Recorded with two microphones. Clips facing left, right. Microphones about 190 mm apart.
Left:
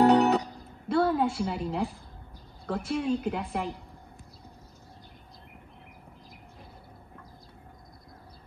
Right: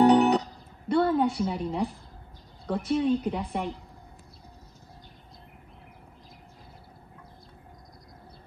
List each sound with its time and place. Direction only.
0.0 s music: centre (ahead or behind)
0.8 s a sound: centre (ahead or behind)
1.5 s a woman's voice: centre (ahead or behind)